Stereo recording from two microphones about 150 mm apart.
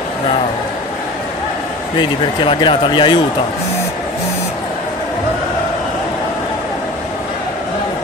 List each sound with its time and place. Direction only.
2.0 s speech: 35° left (ahead or behind)